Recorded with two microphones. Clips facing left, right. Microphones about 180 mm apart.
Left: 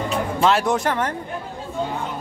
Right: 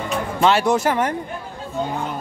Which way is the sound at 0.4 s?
Centre (ahead or behind).